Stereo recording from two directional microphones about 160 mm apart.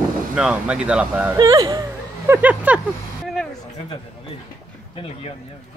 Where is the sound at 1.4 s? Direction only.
25° right (ahead or behind); by 2.8 s 10° right (ahead or behind).